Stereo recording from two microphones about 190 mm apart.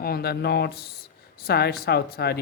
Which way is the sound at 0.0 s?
55° left (ahead or behind).